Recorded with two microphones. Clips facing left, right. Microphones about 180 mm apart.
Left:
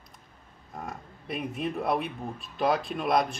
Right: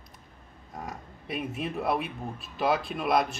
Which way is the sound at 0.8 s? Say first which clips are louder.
Even; centre (ahead or behind).